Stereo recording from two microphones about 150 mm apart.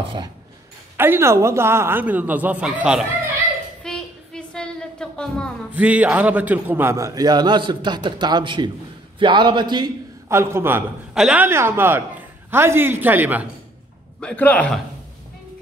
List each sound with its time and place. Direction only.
0.9 s a man's voice: 15° right (ahead or behind)
3.8 s a sound: 5° left (ahead or behind)
5.8 s a man's voice: 10° right (ahead or behind); by 10.3 s 30° right (ahead or behind)
10.3 s a man's voice: 15° right (ahead or behind)
14.2 s a man's voice: 10° left (ahead or behind)